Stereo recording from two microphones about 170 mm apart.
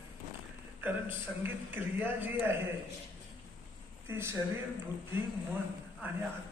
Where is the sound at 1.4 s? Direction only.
10° right (ahead or behind).